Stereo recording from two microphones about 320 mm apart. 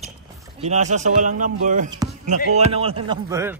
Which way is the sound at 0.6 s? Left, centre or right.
Right.